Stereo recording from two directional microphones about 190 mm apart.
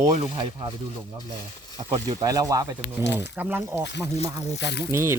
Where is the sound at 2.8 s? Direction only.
65° left (ahead or behind).